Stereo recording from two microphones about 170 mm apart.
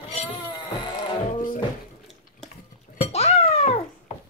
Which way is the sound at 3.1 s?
40° left (ahead or behind).